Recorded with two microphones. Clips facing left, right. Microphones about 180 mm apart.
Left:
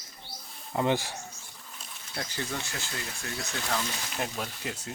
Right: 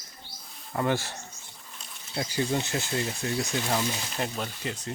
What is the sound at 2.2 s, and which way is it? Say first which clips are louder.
Speech: right 7 dB; 15° right (ahead or behind).